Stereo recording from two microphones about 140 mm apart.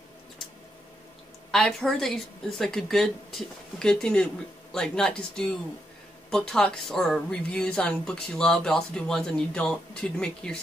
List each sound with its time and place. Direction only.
1.5 s speech: 5° left (ahead or behind)